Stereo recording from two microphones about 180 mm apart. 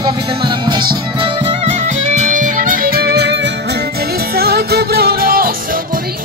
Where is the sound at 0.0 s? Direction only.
25° right (ahead or behind).